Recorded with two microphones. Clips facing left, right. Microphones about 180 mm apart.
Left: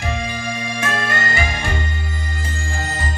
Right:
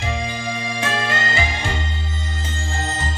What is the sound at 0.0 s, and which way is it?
Music, 20° right (ahead or behind).